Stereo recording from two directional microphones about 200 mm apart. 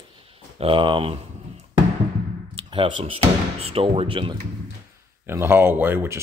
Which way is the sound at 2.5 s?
25° right (ahead or behind).